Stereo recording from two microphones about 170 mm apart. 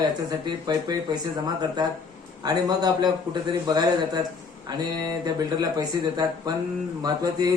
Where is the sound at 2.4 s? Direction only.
25° right (ahead or behind).